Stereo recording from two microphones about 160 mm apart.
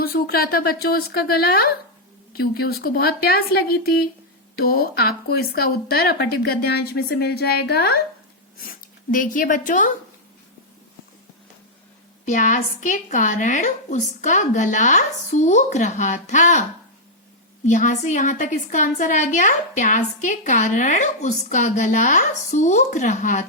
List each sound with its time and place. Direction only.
0.0 s speech: 70° left (ahead or behind)
9.1 s a woman's voice: 55° left (ahead or behind)
12.2 s a woman's voice: 50° left (ahead or behind)
17.7 s a woman's voice: 50° left (ahead or behind)